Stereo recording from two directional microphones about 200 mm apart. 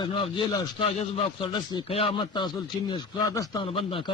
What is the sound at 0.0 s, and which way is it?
A man's voice, 25° left (ahead or behind).